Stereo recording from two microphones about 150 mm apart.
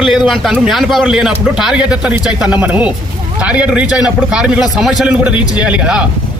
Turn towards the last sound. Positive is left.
turn(degrees=-5)  # may be behind; listen again after turning